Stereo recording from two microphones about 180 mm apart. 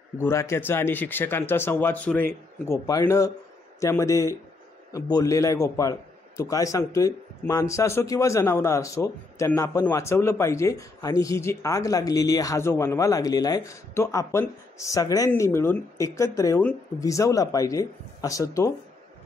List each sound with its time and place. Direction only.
0.2 s a man's voice: 15° left (ahead or behind)